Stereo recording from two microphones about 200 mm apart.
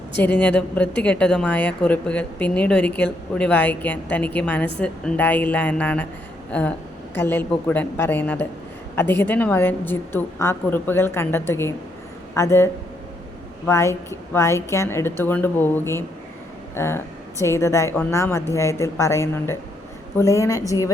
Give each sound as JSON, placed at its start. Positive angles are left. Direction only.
{"t": 0.2, "sound": "a woman's voice", "side_deg": 5}